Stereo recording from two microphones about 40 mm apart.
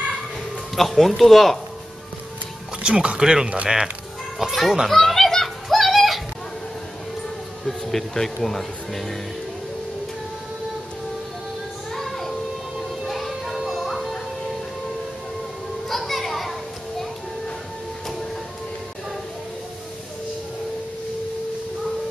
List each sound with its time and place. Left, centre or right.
0.7 s speech: centre
2.8 s speech: right
3.2 s speech: centre
4.4 s speech: centre
4.8 s a sound: centre
7.6 s speech: centre
11.9 s music: centre
15.9 s children playing: centre